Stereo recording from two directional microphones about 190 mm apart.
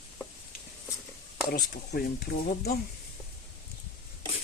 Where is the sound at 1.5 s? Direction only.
55° left (ahead or behind).